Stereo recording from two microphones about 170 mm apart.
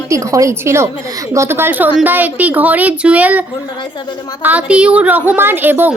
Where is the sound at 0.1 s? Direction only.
20° right (ahead or behind).